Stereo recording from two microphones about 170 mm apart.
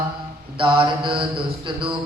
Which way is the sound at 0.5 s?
30° right (ahead or behind).